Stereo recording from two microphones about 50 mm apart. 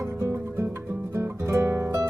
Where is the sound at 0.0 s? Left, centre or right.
Right.